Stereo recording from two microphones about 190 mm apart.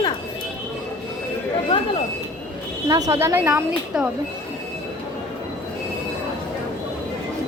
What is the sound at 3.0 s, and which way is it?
A woman's voice, 15° right (ahead or behind).